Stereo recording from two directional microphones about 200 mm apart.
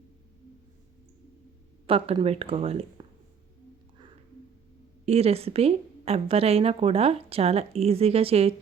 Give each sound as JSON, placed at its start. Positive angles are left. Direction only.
{"t": 1.9, "sound": "speech", "side_deg": -30}
{"t": 5.0, "sound": "speech", "side_deg": -30}